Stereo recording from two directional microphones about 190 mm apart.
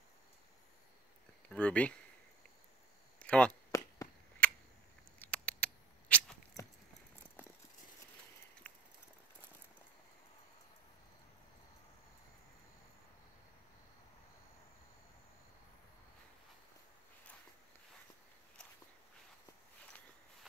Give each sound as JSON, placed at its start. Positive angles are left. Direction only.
{"t": 1.5, "sound": "speech", "side_deg": 5}
{"t": 3.2, "sound": "chop", "side_deg": 5}
{"t": 4.4, "sound": "a sound", "side_deg": 5}
{"t": 5.2, "sound": "rodents", "side_deg": 5}
{"t": 6.6, "sound": "clip-clop", "side_deg": 20}
{"t": 8.6, "sound": "clip-clop", "side_deg": 5}